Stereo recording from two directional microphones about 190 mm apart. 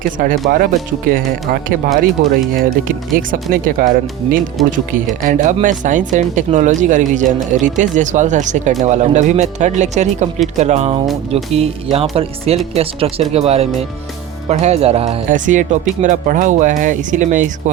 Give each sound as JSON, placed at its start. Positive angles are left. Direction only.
{"t": 0.2, "sound": "speech", "side_deg": -45}
{"t": 3.5, "sound": "speech", "side_deg": -50}
{"t": 4.6, "sound": "speech", "side_deg": 0}
{"t": 5.2, "sound": "speech", "side_deg": -45}